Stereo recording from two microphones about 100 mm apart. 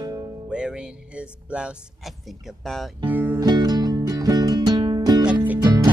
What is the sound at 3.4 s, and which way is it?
Music, 40° right (ahead or behind).